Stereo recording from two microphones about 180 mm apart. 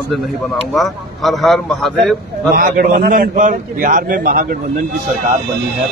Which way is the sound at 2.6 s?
55° right (ahead or behind).